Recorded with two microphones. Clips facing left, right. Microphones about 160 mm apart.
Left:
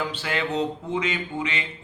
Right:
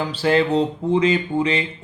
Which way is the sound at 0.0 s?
35° right (ahead or behind).